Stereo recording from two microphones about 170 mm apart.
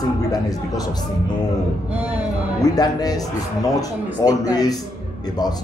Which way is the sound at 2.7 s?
20° left (ahead or behind).